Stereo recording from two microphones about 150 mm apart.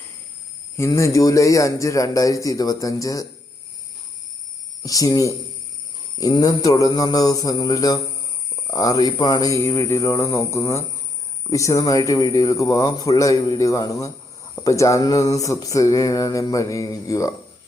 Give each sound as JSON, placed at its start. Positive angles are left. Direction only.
{"t": 0.8, "sound": "speech", "side_deg": 20}
{"t": 4.8, "sound": "speech", "side_deg": 25}